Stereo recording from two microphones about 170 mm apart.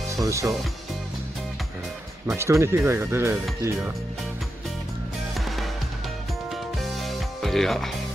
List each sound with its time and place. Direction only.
0.1 s speech: 15° right (ahead or behind)
2.2 s speech: 15° right (ahead or behind)
6.5 s music: centre (ahead or behind)